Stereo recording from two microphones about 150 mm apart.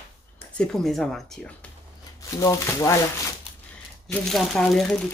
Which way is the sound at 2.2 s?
25° left (ahead or behind).